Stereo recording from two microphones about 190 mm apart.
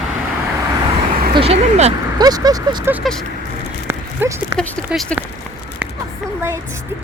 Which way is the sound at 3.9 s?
15° right (ahead or behind).